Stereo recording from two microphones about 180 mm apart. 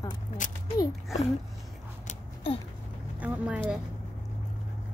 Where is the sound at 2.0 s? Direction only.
30° left (ahead or behind).